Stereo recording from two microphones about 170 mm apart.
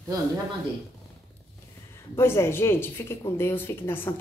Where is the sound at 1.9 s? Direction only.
15° left (ahead or behind).